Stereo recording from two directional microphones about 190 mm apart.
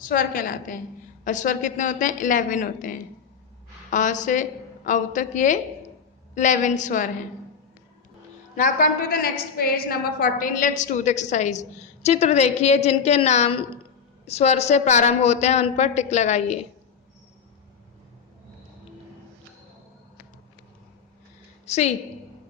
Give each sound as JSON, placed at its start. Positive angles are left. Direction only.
{"t": 0.1, "sound": "a woman's voice", "side_deg": 45}
{"t": 8.5, "sound": "a woman's voice", "side_deg": 45}
{"t": 21.7, "sound": "a woman's voice", "side_deg": 35}